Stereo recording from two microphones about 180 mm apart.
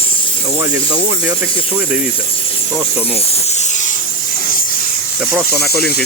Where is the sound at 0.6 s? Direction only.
15° right (ahead or behind).